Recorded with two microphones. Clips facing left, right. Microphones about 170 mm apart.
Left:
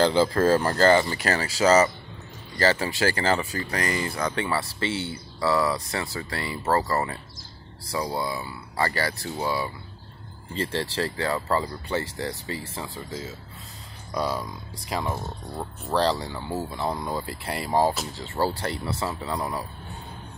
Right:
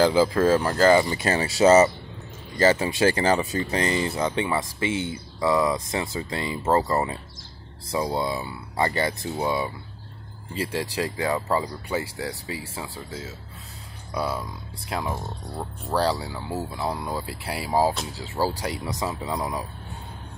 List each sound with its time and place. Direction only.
0.0 s speech: 5° right (ahead or behind)
1.1 s speech: 20° right (ahead or behind)
10.5 s speech: 10° right (ahead or behind)